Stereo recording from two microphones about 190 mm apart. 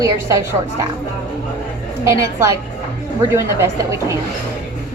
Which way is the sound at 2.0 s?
15° right (ahead or behind).